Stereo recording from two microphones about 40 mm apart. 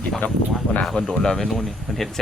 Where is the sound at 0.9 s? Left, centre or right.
Centre.